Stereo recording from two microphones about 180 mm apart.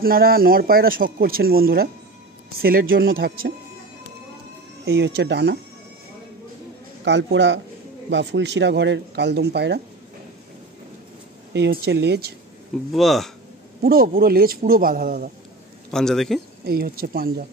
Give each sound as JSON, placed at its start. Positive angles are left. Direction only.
{"t": 0.0, "sound": "speech", "side_deg": -55}
{"t": 4.8, "sound": "speech", "side_deg": -70}
{"t": 7.1, "sound": "a man's voice", "side_deg": -85}
{"t": 11.5, "sound": "speech", "side_deg": -70}
{"t": 12.9, "sound": "speech", "side_deg": 0}
{"t": 13.8, "sound": "speech", "side_deg": -55}
{"t": 15.9, "sound": "speech", "side_deg": 0}
{"t": 16.6, "sound": "speech", "side_deg": -55}